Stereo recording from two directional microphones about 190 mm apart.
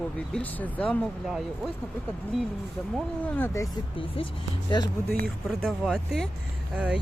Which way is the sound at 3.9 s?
30° left (ahead or behind).